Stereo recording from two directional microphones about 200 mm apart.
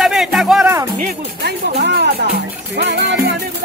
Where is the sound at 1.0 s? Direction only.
55° right (ahead or behind).